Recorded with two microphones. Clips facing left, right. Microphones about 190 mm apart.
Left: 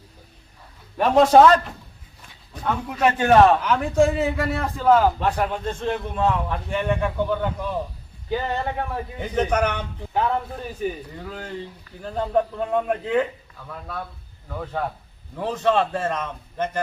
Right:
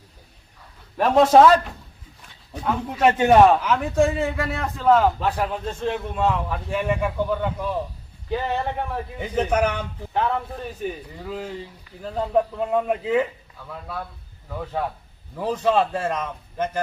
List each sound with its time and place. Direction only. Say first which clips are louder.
0.9 s a man's voice: even; centre (ahead or behind)
3.0 s a man's voice: right 2 dB; 30° right (ahead or behind)
3.2 s a man's voice: even; 5° right (ahead or behind)
15.4 s a man's voice: right 1 dB; 5° right (ahead or behind)